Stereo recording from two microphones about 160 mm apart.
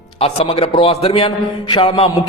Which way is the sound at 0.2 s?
40° left (ahead or behind).